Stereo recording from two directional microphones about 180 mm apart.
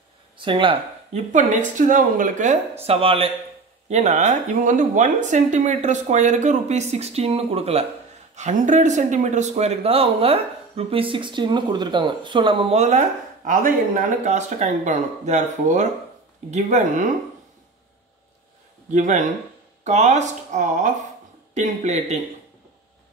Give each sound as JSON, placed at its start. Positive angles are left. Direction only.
{"t": 0.4, "sound": "speech", "side_deg": -25}
{"t": 1.3, "sound": "a woman's voice", "side_deg": -45}
{"t": 2.8, "sound": "speech", "side_deg": -35}
{"t": 18.9, "sound": "a woman's voice", "side_deg": -45}